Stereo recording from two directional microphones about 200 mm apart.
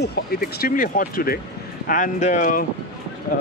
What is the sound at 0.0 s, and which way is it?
Speech, 55° left (ahead or behind).